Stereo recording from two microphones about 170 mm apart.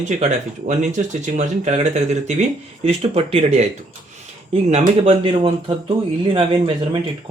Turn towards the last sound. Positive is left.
turn(degrees=-30)  # may be behind; listen again after turning